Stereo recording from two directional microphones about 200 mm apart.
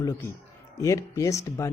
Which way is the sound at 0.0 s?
15° left (ahead or behind).